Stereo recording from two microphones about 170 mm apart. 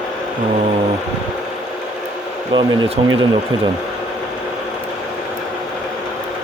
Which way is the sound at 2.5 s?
35° right (ahead or behind).